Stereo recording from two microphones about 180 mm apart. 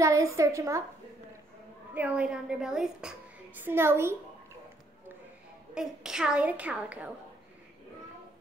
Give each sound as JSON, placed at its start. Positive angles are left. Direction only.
{"t": 0.0, "sound": "a woman's voice", "side_deg": -15}
{"t": 2.0, "sound": "a woman's voice", "side_deg": -5}
{"t": 5.8, "sound": "a woman's voice", "side_deg": -5}